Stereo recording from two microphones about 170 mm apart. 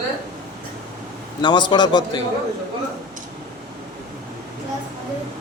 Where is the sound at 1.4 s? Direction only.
25° left (ahead or behind).